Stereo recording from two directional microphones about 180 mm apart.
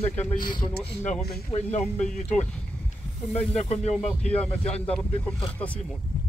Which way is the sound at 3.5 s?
35° left (ahead or behind).